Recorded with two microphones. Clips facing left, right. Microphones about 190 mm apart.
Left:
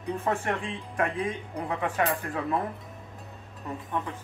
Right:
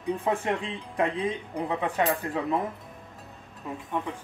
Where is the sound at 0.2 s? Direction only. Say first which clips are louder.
Right 1 dB; 15° right (ahead or behind).